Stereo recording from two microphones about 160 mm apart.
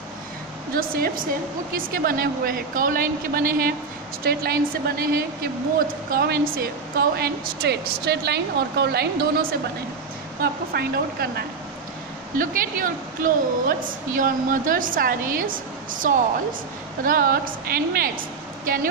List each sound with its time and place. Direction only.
0.7 s a woman's voice: 65° right (ahead or behind)
4.2 s a woman's voice: 75° right (ahead or behind)
12.4 s a woman's voice: 60° right (ahead or behind)